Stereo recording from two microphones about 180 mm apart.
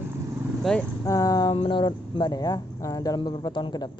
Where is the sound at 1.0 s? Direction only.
20° left (ahead or behind).